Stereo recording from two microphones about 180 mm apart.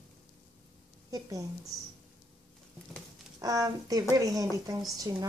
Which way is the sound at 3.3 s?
20° right (ahead or behind).